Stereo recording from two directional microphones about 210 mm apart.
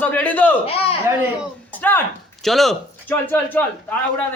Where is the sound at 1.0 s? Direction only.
10° right (ahead or behind).